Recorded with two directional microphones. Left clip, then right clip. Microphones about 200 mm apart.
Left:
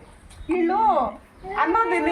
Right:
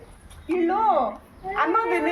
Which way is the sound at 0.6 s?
Centre (ahead or behind).